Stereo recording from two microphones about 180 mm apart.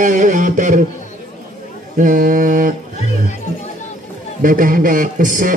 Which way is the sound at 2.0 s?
50° right (ahead or behind).